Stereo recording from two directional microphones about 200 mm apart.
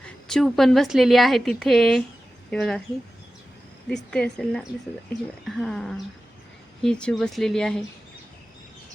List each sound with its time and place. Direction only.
0.0 s a woman's voice: centre (ahead or behind)
3.8 s a woman's voice: 5° left (ahead or behind)